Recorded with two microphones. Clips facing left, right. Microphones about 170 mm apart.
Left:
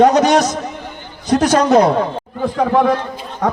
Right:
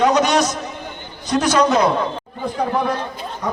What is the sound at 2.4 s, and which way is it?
Speech, 90° left.